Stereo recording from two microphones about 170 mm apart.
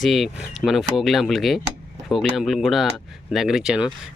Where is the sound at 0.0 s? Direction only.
Centre (ahead or behind).